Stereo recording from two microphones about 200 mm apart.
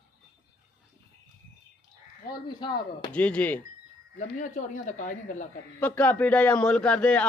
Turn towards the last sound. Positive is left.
turn(degrees=5)  # may be behind; listen again after turning